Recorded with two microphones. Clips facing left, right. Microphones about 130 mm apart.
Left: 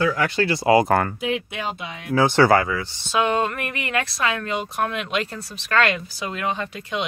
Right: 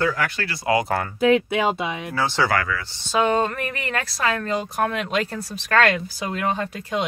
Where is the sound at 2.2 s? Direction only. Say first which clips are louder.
Left 6 dB; 55° left (ahead or behind).